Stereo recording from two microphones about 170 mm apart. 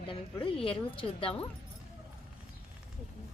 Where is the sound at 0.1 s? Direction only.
30° left (ahead or behind).